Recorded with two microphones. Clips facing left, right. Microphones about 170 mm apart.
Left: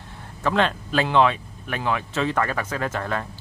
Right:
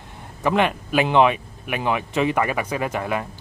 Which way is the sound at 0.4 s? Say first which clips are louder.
Right 2 dB; 15° right (ahead or behind).